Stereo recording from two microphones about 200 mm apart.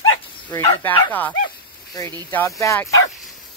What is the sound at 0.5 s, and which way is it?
Speech, 15° left (ahead or behind).